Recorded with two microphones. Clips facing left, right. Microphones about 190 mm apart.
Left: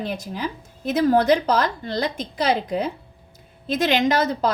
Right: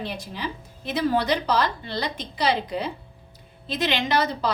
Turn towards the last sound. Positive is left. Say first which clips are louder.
# left 4 dB
turn(degrees=45)  # may be behind; listen again after turning